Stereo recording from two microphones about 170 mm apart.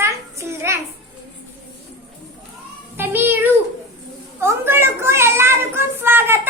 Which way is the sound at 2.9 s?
10° right (ahead or behind).